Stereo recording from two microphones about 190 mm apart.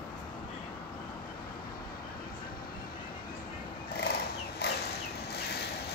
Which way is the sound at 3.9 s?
55° left (ahead or behind).